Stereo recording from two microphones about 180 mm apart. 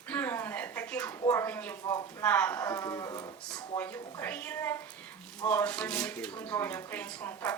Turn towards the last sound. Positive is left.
turn(degrees=10)  # may be behind; listen again after turning